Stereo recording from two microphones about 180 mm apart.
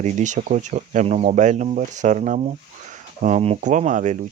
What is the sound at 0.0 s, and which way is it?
Speech, 45° right (ahead or behind).